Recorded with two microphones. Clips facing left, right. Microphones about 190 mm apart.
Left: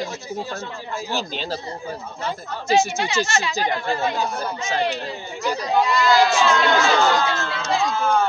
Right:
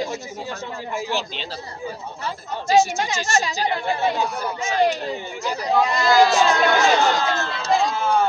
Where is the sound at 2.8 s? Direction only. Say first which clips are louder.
Right 2 dB; 45° right (ahead or behind).